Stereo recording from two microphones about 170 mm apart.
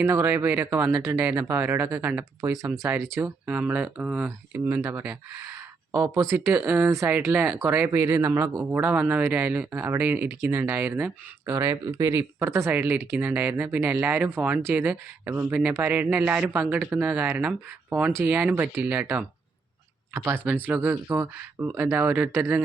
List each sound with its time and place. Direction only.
0.0 s speech: 10° right (ahead or behind)